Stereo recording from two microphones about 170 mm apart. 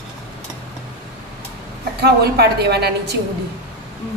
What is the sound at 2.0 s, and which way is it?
Speech, 70° right (ahead or behind).